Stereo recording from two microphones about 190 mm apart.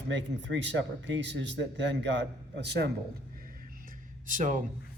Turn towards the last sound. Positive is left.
turn(degrees=-45)  # may be behind; listen again after turning